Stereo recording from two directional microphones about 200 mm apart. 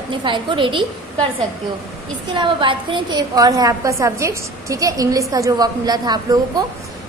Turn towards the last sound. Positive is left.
turn(degrees=-20)  # may be behind; listen again after turning